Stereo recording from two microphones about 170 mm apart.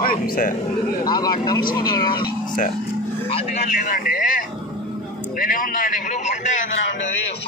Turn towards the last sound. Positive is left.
turn(degrees=45)  # may be behind; listen again after turning